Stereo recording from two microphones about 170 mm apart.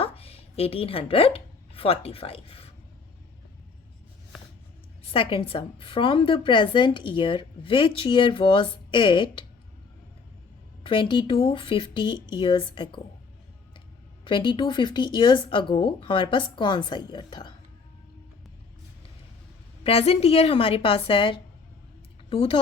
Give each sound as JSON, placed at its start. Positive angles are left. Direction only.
{"t": 0.0, "sound": "a woman's voice", "side_deg": 35}
{"t": 5.1, "sound": "a woman's voice", "side_deg": 30}
{"t": 10.8, "sound": "a woman's voice", "side_deg": 30}
{"t": 14.3, "sound": "a woman's voice", "side_deg": 30}
{"t": 19.8, "sound": "a woman's voice", "side_deg": 35}